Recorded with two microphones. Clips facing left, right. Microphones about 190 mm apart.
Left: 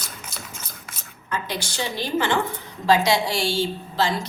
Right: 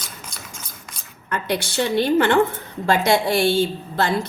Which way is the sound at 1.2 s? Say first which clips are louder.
Right 5 dB; 60° right (ahead or behind).